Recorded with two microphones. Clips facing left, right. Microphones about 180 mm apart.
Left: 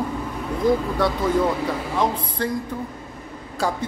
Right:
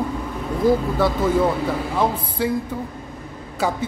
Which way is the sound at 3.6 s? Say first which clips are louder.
Right 2 dB; 5° right (ahead or behind).